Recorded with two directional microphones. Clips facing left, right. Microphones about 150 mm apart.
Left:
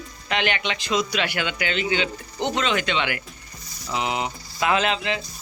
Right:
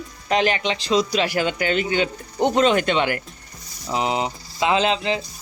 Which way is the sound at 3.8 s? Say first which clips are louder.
Right 3 dB; 35° right (ahead or behind).